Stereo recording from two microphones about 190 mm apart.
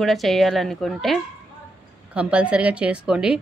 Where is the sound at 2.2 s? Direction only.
5° right (ahead or behind).